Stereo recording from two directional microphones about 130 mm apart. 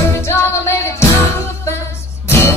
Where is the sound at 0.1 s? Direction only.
20° left (ahead or behind).